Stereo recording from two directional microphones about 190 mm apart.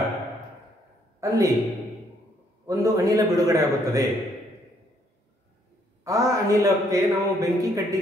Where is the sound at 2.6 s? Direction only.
15° right (ahead or behind).